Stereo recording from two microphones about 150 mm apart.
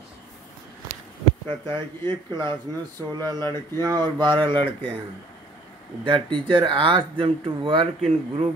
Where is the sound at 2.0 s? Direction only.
15° left (ahead or behind).